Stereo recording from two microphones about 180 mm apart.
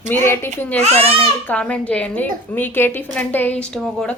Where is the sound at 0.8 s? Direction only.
35° right (ahead or behind).